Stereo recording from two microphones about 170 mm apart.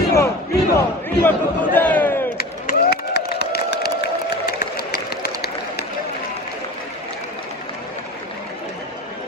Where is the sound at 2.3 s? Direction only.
70° left (ahead or behind).